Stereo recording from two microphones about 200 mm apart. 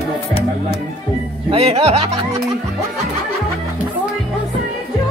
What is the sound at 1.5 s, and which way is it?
Speech, 30° right (ahead or behind).